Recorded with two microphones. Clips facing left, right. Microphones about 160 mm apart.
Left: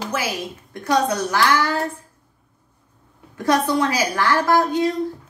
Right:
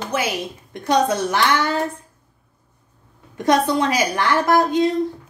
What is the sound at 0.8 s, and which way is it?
A woman's voice, 20° right (ahead or behind).